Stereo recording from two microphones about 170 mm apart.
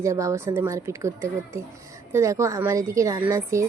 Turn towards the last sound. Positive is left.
turn(degrees=-15)  # may be behind; listen again after turning